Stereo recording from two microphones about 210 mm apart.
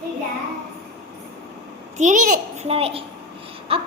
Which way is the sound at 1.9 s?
35° right (ahead or behind).